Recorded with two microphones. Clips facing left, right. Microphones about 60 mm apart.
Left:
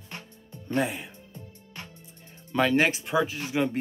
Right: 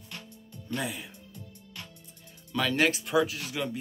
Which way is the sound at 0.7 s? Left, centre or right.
Left.